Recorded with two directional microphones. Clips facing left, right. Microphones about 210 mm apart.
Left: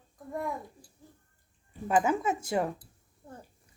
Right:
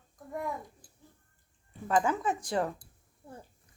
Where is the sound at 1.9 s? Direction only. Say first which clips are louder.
Left 2 dB; 15° left (ahead or behind).